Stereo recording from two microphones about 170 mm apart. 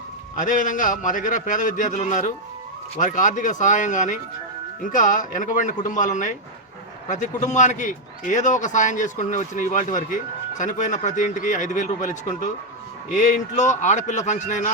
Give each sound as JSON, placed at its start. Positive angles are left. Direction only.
{"t": 0.3, "sound": "a man's voice", "side_deg": 50}